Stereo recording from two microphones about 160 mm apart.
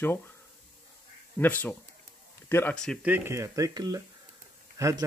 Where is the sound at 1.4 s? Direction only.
10° left (ahead or behind).